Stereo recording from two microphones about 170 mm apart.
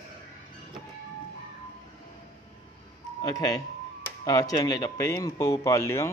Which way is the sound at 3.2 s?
20° left (ahead or behind).